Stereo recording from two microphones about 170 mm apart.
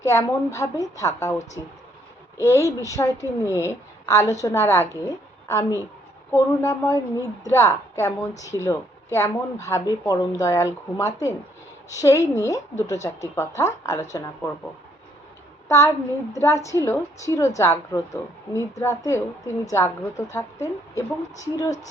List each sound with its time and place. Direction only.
0.0 s a woman's voice: 15° left (ahead or behind)
16.3 s a woman's voice: 15° left (ahead or behind)